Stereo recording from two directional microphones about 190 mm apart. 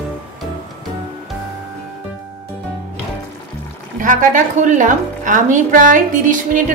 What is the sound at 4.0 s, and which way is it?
A woman's voice, 45° right (ahead or behind).